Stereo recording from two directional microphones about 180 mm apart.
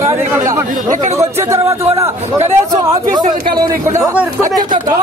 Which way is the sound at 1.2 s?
15° right (ahead or behind).